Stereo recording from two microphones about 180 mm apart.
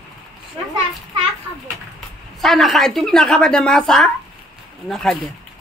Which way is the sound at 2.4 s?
Centre (ahead or behind).